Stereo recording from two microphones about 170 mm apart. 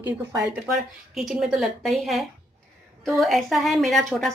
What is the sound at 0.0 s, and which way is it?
Speech, 15° right (ahead or behind).